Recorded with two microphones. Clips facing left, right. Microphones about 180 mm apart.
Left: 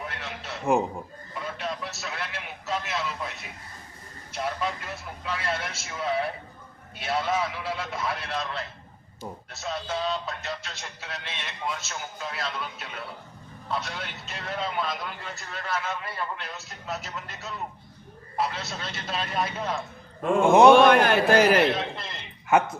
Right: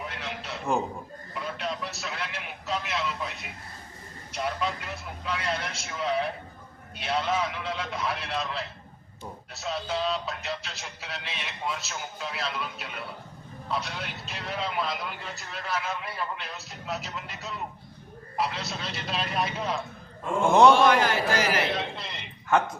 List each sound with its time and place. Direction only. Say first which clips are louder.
0.0 s a sound: even; centre (ahead or behind)
1.4 s vehicle: even; centre (ahead or behind)
4.3 s a man's voice: even; centre (ahead or behind)
20.7 s a man's voice: left 4 dB; 60° left (ahead or behind)
21.7 s a man's voice: left 2 dB; centre (ahead or behind)